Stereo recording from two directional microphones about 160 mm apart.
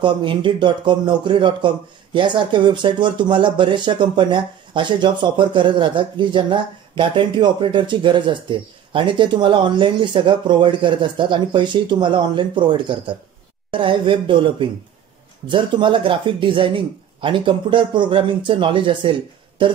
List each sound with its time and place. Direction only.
0.0 s speech: 30° right (ahead or behind)